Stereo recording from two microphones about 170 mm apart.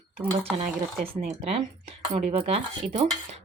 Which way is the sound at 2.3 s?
40° right (ahead or behind).